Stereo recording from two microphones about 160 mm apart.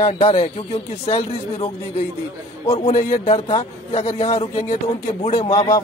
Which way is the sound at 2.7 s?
45° left (ahead or behind).